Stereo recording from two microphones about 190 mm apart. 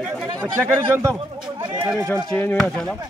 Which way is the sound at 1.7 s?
10° right (ahead or behind).